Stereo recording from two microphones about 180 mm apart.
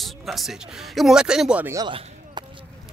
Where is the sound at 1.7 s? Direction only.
25° right (ahead or behind).